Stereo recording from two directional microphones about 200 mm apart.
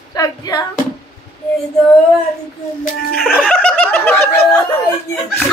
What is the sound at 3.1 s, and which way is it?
Snicker, 5° right (ahead or behind).